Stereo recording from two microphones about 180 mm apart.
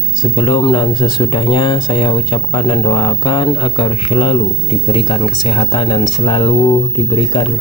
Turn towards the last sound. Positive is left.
turn(degrees=25)  # may be behind; listen again after turning